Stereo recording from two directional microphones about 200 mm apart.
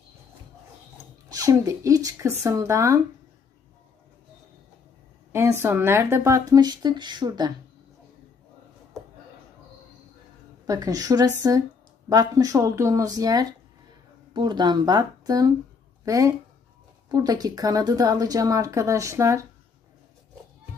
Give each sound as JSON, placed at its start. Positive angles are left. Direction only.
{"t": 1.3, "sound": "speech", "side_deg": -15}
{"t": 5.3, "sound": "speech", "side_deg": -15}
{"t": 10.7, "sound": "speech", "side_deg": -15}